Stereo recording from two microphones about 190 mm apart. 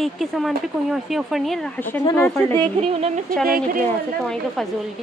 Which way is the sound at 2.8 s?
35° right (ahead or behind).